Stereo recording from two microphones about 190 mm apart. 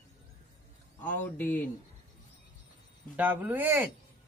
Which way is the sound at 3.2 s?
10° right (ahead or behind).